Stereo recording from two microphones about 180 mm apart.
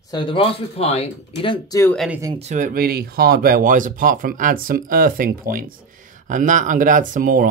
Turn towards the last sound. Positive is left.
turn(degrees=-50)  # may be behind; listen again after turning